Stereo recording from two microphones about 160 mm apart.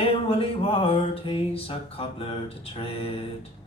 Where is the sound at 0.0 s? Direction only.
35° left (ahead or behind).